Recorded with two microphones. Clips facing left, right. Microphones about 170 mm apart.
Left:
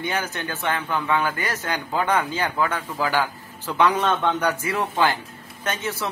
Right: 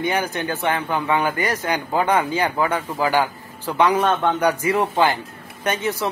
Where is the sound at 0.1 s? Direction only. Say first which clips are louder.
Right 5 dB; 15° right (ahead or behind).